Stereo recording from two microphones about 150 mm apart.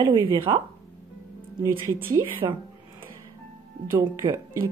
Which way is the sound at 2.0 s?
15° right (ahead or behind).